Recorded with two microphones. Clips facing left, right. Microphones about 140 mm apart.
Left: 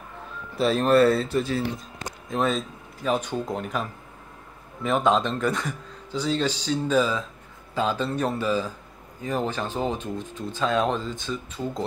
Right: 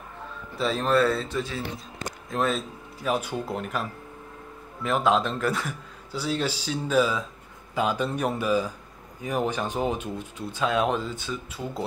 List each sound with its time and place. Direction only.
0.6 s speech: 60° left (ahead or behind)
2.2 s speech: centre (ahead or behind)
4.8 s speech: 5° right (ahead or behind)